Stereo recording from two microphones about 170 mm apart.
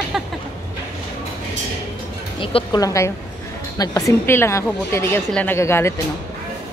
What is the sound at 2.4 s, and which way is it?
A woman's voice, 25° left (ahead or behind).